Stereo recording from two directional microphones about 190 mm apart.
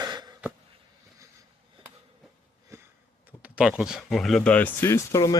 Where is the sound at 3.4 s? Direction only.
5° right (ahead or behind); by 5.4 s 20° left (ahead or behind).